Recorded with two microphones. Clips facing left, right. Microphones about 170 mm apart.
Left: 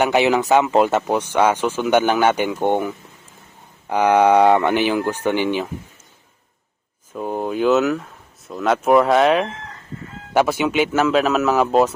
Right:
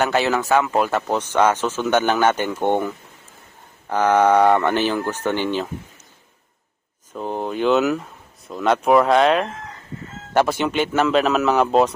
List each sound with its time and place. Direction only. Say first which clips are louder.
0.0 s speech: left 3 dB; 15° left (ahead or behind)
1.0 s speech: left 1 dB; 10° left (ahead or behind)
7.1 s speech: left 2 dB; 10° left (ahead or behind)